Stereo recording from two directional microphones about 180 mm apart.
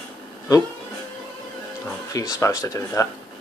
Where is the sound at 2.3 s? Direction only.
15° left (ahead or behind).